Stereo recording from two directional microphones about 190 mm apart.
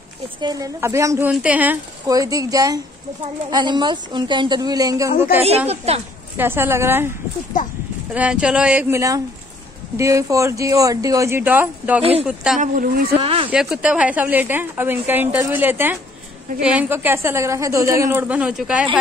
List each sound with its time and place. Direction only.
0.4 s a woman's voice: 20° right (ahead or behind)
2.0 s a woman's voice: 20° right (ahead or behind)
5.7 s speech: 35° right (ahead or behind)
6.3 s a woman's voice: 10° right (ahead or behind)
7.5 s speech: 40° left (ahead or behind)
8.1 s a woman's voice: 5° right (ahead or behind)
12.0 s speech: 30° right (ahead or behind)
12.5 s speech: 45° right (ahead or behind)
13.2 s a woman's voice: 30° right (ahead or behind)
13.5 s a woman's voice: 5° right (ahead or behind)